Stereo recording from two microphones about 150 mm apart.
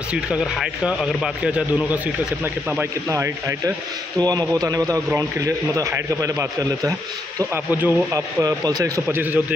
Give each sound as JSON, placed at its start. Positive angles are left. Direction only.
{"t": 0.1, "sound": "a man's voice", "side_deg": -5}
{"t": 9.0, "sound": "a man's voice", "side_deg": -10}